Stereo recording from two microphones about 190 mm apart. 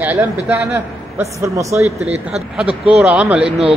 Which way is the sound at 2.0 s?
35° right (ahead or behind).